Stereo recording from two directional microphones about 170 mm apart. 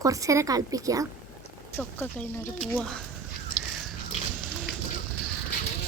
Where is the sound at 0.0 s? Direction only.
20° right (ahead or behind).